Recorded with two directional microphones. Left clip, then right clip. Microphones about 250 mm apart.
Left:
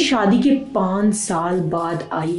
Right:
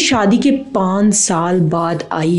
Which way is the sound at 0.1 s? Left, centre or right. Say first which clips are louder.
Right 3 dB; right.